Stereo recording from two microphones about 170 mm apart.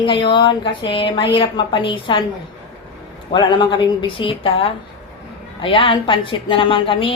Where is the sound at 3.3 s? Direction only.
30° left (ahead or behind).